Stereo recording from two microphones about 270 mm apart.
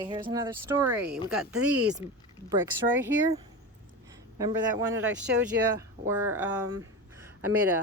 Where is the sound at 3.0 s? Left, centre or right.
Centre.